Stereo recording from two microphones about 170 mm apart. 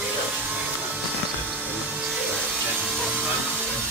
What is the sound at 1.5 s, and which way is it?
Music, 10° right (ahead or behind).